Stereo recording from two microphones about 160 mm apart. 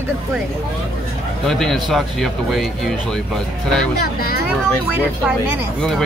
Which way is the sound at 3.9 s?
75° left (ahead or behind).